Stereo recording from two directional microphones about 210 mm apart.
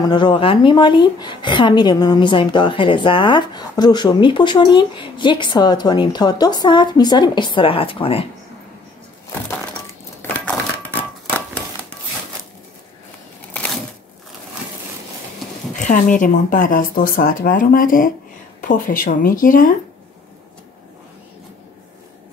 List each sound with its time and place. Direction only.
0.0 s a woman's voice: 20° left (ahead or behind)
10.2 s a sound: 5° left (ahead or behind)
15.7 s speech: 35° left (ahead or behind)